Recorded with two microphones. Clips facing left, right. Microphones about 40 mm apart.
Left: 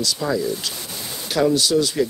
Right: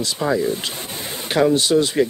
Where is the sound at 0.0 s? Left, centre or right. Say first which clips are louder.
Right 2 dB; right.